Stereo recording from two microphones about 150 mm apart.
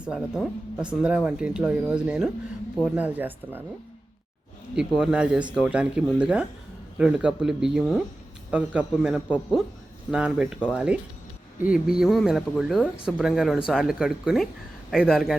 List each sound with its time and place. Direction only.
0.8 s speech: 5° right (ahead or behind)
4.7 s speech: 5° right (ahead or behind)